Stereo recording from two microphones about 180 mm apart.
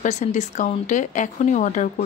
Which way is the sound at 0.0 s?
40° left (ahead or behind).